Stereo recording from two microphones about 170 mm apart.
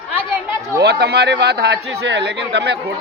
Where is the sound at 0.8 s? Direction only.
70° right (ahead or behind).